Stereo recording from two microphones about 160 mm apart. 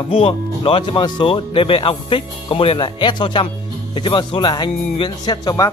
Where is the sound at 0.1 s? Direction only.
35° left (ahead or behind).